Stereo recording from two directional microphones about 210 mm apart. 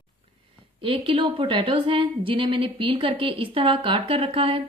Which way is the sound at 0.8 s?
25° right (ahead or behind).